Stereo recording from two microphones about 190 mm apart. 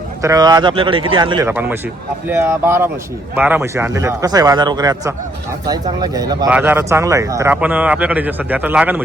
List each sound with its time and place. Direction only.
0.2 s a man's voice: 20° right (ahead or behind)
1.5 s a man's voice: 10° right (ahead or behind)